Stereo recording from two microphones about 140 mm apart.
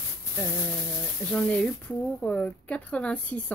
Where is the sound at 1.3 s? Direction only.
10° left (ahead or behind).